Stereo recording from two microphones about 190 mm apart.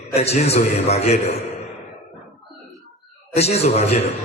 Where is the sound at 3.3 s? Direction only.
35° left (ahead or behind).